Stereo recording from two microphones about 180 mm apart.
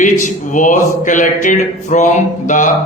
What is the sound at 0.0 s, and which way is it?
A man's voice, 45° left (ahead or behind).